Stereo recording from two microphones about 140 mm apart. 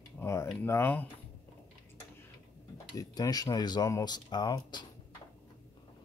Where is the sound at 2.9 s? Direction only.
25° left (ahead or behind).